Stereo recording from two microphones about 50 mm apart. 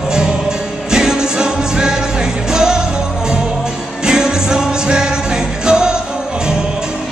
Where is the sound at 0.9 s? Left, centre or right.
Centre.